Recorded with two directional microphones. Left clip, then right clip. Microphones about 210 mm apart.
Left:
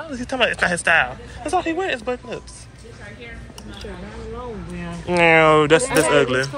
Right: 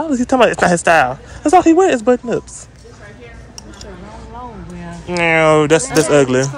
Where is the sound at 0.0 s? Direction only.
40° right (ahead or behind).